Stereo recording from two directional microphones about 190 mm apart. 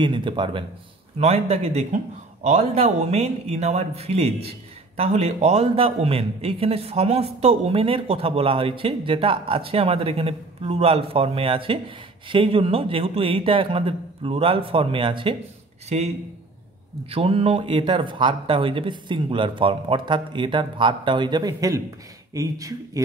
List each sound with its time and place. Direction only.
0.0 s speech: 25° right (ahead or behind)
17.1 s speech: 30° right (ahead or behind)